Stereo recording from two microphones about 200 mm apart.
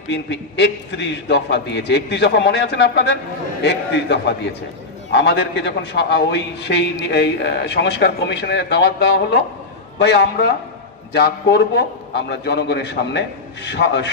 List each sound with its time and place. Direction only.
0.1 s a man's voice: 60° left (ahead or behind)